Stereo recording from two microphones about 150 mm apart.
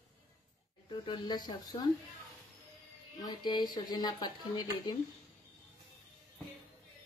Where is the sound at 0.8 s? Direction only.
30° left (ahead or behind).